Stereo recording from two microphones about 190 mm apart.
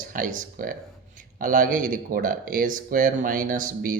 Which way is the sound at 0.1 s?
45° right (ahead or behind).